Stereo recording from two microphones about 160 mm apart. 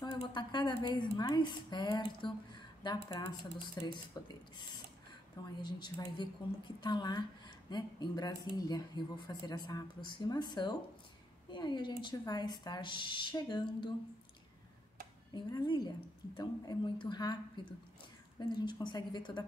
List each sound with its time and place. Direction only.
0.0 s speech: 25° left (ahead or behind)
5.6 s speech: 25° left (ahead or behind)
15.3 s speech: 30° left (ahead or behind)
18.5 s speech: 30° left (ahead or behind)